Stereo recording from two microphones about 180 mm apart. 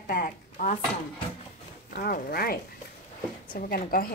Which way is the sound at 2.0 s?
55° left (ahead or behind).